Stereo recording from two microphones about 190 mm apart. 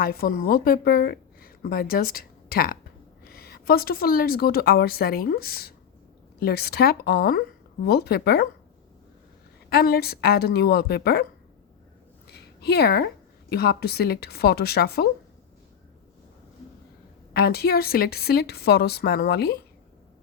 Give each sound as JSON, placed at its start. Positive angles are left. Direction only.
{"t": 0.0, "sound": "a woman's voice", "side_deg": 50}
{"t": 9.6, "sound": "a woman's voice", "side_deg": 55}
{"t": 12.3, "sound": "a sound", "side_deg": 60}
{"t": 13.5, "sound": "a woman's voice", "side_deg": 55}
{"t": 17.3, "sound": "a woman's voice", "side_deg": 55}